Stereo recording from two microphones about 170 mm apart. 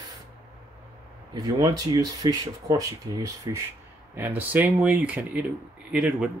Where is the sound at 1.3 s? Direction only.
20° right (ahead or behind).